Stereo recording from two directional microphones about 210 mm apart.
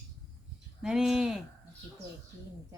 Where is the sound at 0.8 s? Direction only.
5° right (ahead or behind).